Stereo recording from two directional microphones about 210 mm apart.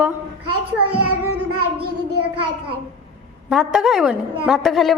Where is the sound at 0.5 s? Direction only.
90° right.